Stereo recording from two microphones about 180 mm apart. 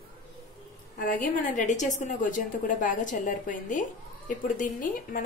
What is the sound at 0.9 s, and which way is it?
A woman's voice, 50° left (ahead or behind).